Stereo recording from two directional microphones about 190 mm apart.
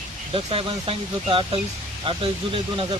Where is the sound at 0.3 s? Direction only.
30° right (ahead or behind).